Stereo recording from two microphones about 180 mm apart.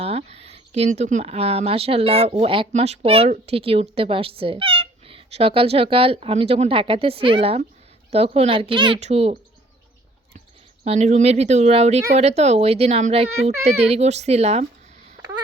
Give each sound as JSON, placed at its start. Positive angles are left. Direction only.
{"t": 0.0, "sound": "speech", "side_deg": -35}
{"t": 10.8, "sound": "speech", "side_deg": -40}